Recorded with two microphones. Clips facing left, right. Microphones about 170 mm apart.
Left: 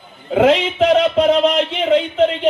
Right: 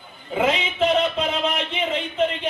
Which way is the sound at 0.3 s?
90° left.